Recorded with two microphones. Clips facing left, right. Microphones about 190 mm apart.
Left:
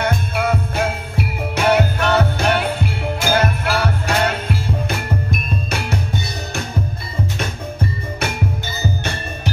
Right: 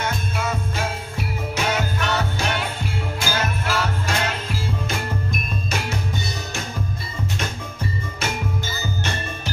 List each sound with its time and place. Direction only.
0.0 s jingle bell: 60° left (ahead or behind)
3.3 s music: 60° left (ahead or behind)